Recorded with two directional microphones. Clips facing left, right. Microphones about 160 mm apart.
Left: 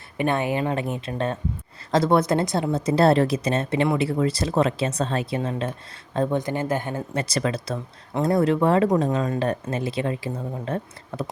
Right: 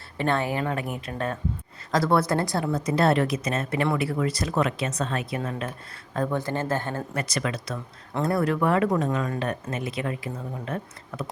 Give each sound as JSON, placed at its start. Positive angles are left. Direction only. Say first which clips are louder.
{"t": 0.2, "sound": "speech", "louder": "left 2 dB", "side_deg": 15}